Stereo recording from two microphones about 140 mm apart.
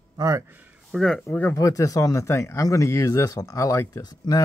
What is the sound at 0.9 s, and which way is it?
Speech, 5° left (ahead or behind).